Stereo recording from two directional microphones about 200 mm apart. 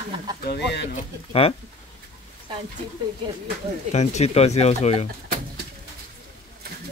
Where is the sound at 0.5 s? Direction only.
55° left (ahead or behind).